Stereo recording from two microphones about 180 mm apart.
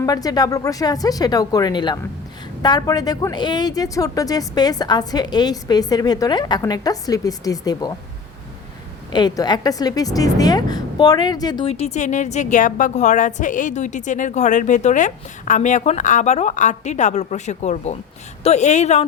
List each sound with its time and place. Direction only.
0.0 s speech: 20° left (ahead or behind)
9.1 s a woman's voice: 20° left (ahead or behind); by 19.0 s 40° left (ahead or behind)